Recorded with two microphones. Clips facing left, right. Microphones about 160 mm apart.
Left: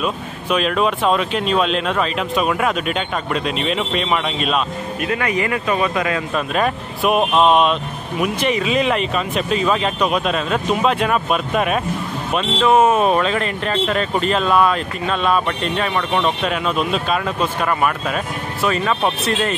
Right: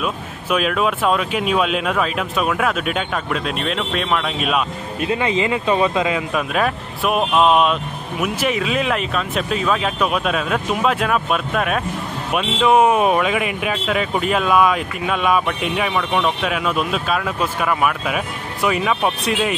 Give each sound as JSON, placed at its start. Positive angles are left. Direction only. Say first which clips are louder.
{"t": 0.0, "sound": "speech", "louder": "left 2 dB", "side_deg": -5}
{"t": 5.0, "sound": "speech", "louder": "right 2 dB", "side_deg": -25}
{"t": 6.5, "sound": "speech", "louder": "left 1 dB", "side_deg": 0}